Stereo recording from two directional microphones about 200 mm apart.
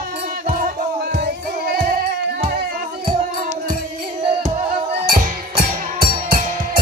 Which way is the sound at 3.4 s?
40° right (ahead or behind).